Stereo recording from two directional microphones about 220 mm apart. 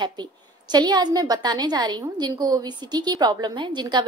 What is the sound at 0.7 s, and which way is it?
A woman's voice, 20° right (ahead or behind).